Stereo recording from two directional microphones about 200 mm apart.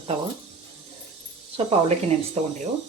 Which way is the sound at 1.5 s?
30° right (ahead or behind).